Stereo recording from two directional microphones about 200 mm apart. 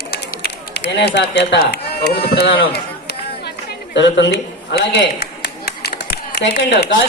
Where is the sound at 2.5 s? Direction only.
55° left (ahead or behind).